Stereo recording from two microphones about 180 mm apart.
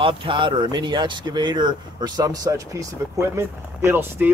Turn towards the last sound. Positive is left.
turn(degrees=-15)  # may be behind; listen again after turning